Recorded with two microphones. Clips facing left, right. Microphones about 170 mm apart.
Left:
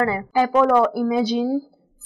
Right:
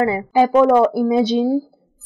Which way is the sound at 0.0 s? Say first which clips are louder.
Right 4 dB; 20° right (ahead or behind).